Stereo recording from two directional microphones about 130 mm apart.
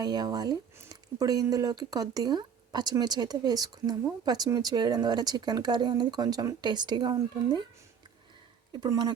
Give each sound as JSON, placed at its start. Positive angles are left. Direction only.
{"t": 0.0, "sound": "speech", "side_deg": -30}
{"t": 8.8, "sound": "speech", "side_deg": -30}